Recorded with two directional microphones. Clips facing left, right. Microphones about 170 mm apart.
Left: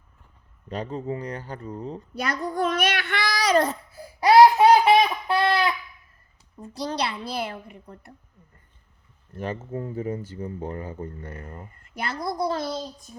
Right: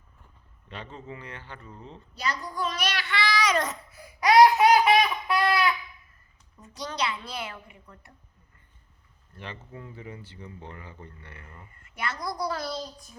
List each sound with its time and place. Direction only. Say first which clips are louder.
0.7 s a woman's voice: left 11 dB; 40° left (ahead or behind)
2.1 s child singing: left 5 dB; 60° left (ahead or behind); by 5.7 s 25° left (ahead or behind)
6.6 s a woman's voice: left 4 dB; 35° left (ahead or behind)
9.3 s speech: left 11 dB; 45° left (ahead or behind); by 12.8 s 25° left (ahead or behind)